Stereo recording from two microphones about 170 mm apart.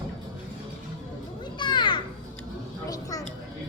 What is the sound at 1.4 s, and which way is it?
Children playing, 25° left (ahead or behind).